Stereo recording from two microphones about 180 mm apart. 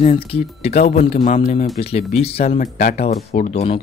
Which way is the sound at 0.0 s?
35° left (ahead or behind).